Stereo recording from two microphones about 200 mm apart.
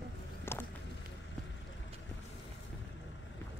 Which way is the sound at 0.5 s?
10° left (ahead or behind).